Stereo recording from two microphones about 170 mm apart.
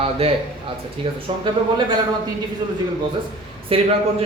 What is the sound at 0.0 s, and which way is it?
Speech, 35° right (ahead or behind).